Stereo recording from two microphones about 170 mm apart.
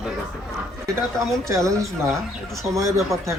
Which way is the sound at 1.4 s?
15° right (ahead or behind).